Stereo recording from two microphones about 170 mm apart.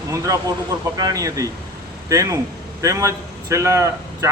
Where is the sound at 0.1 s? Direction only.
20° right (ahead or behind).